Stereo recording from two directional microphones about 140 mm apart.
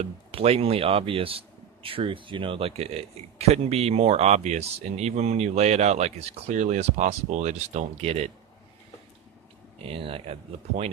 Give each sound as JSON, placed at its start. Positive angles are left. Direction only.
{"t": 0.0, "sound": "a man's voice", "side_deg": -45}
{"t": 9.8, "sound": "a man's voice", "side_deg": -40}